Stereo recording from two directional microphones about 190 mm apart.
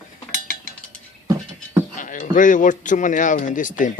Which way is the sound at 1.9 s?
40° left (ahead or behind).